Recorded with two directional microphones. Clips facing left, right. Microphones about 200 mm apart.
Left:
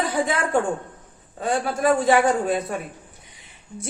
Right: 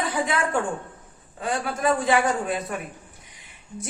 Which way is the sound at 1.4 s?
30° left (ahead or behind).